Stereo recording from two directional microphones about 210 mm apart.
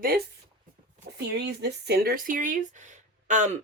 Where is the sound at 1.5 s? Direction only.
50° right (ahead or behind).